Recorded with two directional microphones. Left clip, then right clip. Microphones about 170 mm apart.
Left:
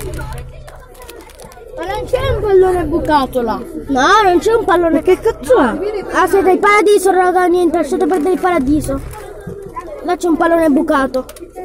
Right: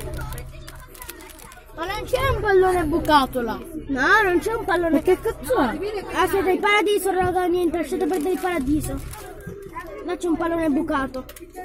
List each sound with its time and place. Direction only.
1.9 s speech: 20° right (ahead or behind)
2.6 s speech: 45° right (ahead or behind)
3.3 s speech: 15° right (ahead or behind)
4.0 s a woman's voice: 35° right (ahead or behind)
4.4 s a woman's voice: 5° left (ahead or behind)
10.0 s a woman's voice: 5° left (ahead or behind)